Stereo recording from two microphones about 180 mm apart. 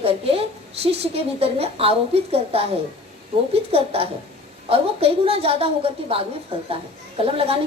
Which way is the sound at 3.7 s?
35° right (ahead or behind).